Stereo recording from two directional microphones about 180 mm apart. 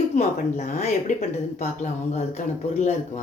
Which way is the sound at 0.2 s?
40° left (ahead or behind).